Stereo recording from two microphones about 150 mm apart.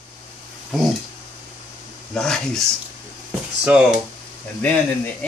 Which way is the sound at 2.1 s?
5° left (ahead or behind).